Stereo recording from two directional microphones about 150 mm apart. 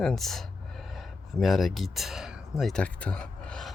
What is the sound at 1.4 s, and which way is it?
Speech, centre (ahead or behind).